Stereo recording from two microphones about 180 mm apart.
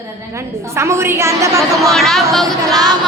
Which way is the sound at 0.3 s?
15° right (ahead or behind).